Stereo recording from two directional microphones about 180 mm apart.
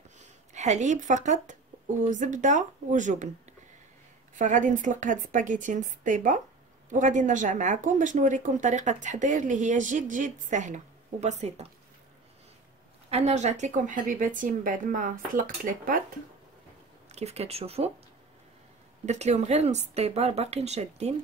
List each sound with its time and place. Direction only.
0.2 s speech: 40° right (ahead or behind)
4.4 s speech: 45° right (ahead or behind)
13.1 s speech: 40° right (ahead or behind)
17.1 s speech: 35° right (ahead or behind)
19.0 s speech: 40° right (ahead or behind)